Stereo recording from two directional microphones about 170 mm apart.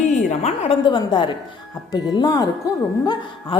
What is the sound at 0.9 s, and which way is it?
A woman's voice, 25° left (ahead or behind).